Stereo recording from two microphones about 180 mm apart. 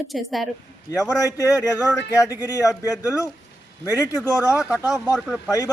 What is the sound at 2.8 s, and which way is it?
Speech, 20° left (ahead or behind).